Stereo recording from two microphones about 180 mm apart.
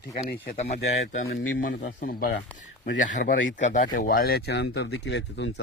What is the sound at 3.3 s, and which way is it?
Speech, 85° left.